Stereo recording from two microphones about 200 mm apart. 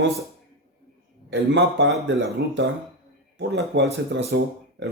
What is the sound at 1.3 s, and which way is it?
Speech, 60° right (ahead or behind).